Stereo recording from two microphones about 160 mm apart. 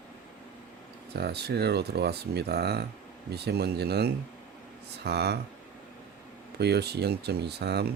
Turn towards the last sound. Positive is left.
turn(degrees=-90)